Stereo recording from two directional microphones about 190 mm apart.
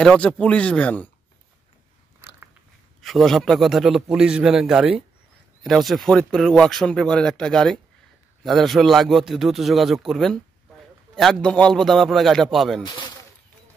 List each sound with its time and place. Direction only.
0.0 s speech: 5° left (ahead or behind)
3.0 s speech: centre (ahead or behind)
12.8 s a sound: 25° left (ahead or behind)